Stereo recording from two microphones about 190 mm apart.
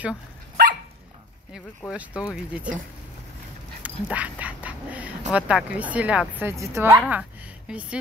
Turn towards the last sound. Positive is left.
turn(degrees=-5)  # may be behind; listen again after turning